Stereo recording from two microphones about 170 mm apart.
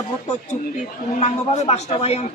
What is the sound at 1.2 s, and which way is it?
A woman's voice, 40° left (ahead or behind).